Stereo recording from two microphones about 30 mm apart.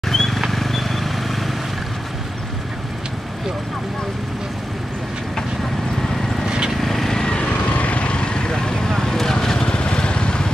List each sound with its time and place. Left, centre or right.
0.1 s vehicle: centre
6.8 s vehicle: centre
7.6 s vehicle: left
8.8 s vehicle: centre
9.7 s vehicle: left